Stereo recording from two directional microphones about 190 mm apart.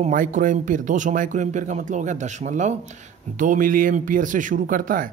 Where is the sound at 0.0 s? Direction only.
45° right (ahead or behind).